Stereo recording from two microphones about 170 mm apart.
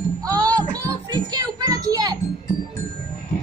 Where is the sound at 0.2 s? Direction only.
20° right (ahead or behind).